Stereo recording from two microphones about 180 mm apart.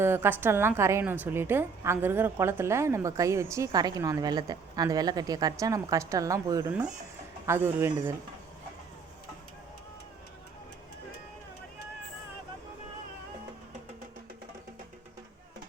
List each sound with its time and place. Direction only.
0.0 s a woman's voice: 15° right (ahead or behind)